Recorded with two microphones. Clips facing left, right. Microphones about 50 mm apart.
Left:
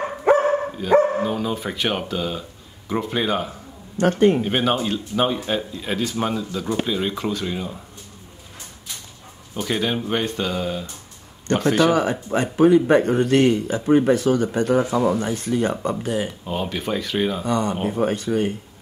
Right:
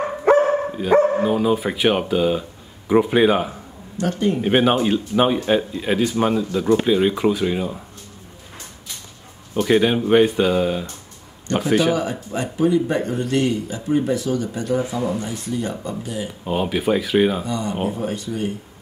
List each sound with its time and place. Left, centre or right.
0.2 s dog: centre
0.7 s speech: centre
4.0 s speech: left
4.4 s speech: centre
9.5 s speech: centre
11.5 s speech: left
16.3 s speech: centre
17.5 s speech: left